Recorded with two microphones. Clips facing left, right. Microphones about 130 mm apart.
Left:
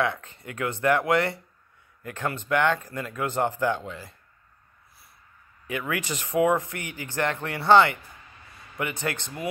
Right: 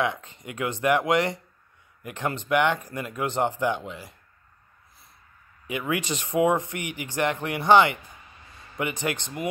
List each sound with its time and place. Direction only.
0.0 s speech: 20° right (ahead or behind)
5.7 s speech: 20° right (ahead or behind)